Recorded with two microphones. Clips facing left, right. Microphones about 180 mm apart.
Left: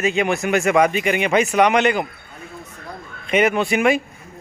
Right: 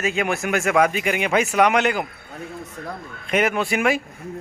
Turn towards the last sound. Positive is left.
turn(degrees=0)  # may be behind; listen again after turning